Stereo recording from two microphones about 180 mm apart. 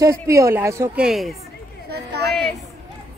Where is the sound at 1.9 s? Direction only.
65° right (ahead or behind).